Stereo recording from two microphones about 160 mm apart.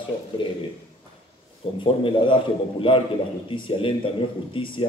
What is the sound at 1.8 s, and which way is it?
Speech, 30° left (ahead or behind).